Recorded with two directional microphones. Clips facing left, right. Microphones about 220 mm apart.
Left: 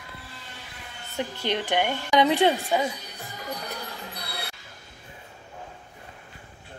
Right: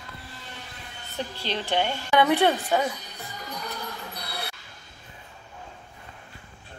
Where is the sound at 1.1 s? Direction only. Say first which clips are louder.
Left 3 dB; 15° left (ahead or behind).